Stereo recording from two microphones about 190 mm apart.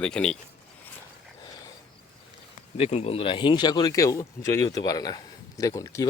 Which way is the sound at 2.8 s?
35° left (ahead or behind).